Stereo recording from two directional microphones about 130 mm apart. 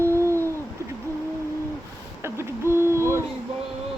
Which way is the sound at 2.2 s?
20° right (ahead or behind).